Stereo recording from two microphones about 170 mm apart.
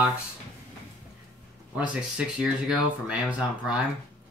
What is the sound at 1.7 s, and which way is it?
Speech, 5° right (ahead or behind).